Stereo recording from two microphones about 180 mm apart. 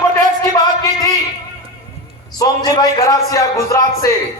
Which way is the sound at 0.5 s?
20° left (ahead or behind).